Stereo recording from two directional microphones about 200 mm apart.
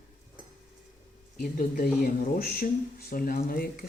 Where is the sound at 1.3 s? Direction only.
45° left (ahead or behind).